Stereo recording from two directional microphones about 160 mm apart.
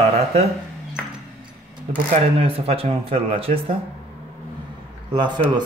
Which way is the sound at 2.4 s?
35° right (ahead or behind).